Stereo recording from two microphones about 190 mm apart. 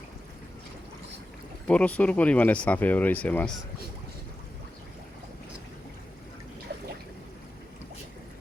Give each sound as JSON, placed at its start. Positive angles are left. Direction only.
{"t": 1.6, "sound": "speech", "side_deg": 5}